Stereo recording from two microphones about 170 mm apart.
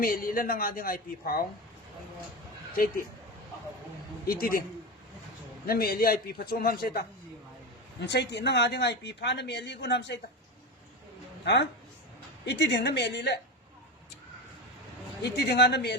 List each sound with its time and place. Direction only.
0.0 s speech: 55° left (ahead or behind)
2.7 s speech: 60° left (ahead or behind)
4.3 s speech: 60° left (ahead or behind)
5.6 s speech: 65° left (ahead or behind)
8.0 s speech: 85° left
12.5 s speech: 85° left
15.2 s speech: 75° left (ahead or behind)